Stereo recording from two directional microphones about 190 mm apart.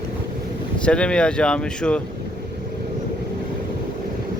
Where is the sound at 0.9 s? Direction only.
5° left (ahead or behind).